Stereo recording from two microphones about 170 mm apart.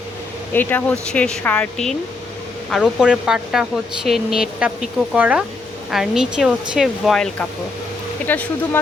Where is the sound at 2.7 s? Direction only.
5° right (ahead or behind).